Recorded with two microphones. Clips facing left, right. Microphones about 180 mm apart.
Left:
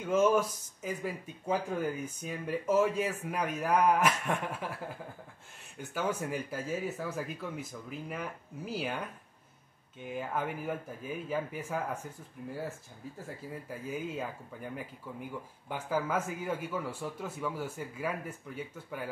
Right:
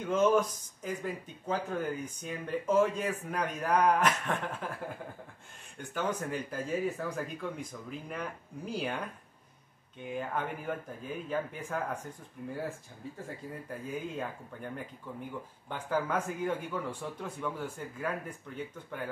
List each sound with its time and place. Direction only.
0.0 s speech: 5° left (ahead or behind)
5.8 s speech: 5° left (ahead or behind)
10.1 s speech: 5° left (ahead or behind)
13.7 s speech: 5° left (ahead or behind)